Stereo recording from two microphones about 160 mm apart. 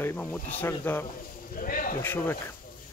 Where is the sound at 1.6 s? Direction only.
65° left (ahead or behind).